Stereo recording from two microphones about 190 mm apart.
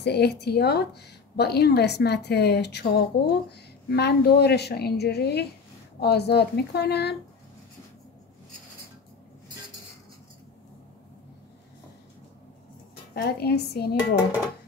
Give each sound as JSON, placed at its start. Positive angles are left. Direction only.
{"t": 0.0, "sound": "a woman's voice", "side_deg": 60}
{"t": 13.1, "sound": "a woman's voice", "side_deg": 55}